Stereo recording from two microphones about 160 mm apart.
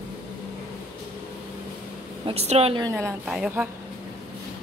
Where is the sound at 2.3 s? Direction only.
40° right (ahead or behind).